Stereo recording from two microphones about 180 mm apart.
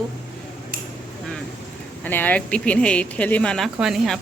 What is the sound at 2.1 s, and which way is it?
Speech, 10° left (ahead or behind).